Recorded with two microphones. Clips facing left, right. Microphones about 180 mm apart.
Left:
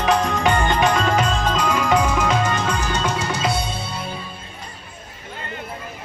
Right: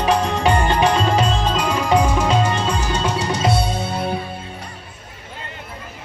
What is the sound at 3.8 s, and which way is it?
Music, 55° right (ahead or behind).